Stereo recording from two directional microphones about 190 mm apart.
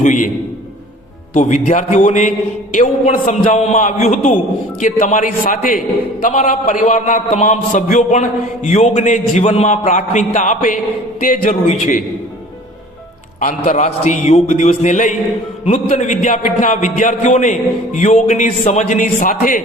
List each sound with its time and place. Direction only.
0.0 s a man's voice: 40° left (ahead or behind)
1.3 s a man's voice: 40° left (ahead or behind)
13.7 s a man's voice: 40° left (ahead or behind)